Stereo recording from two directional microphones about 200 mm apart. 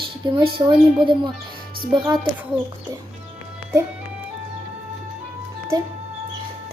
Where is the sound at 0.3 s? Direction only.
25° right (ahead or behind).